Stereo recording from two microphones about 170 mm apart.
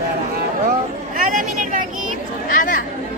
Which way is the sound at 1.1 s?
55° right (ahead or behind).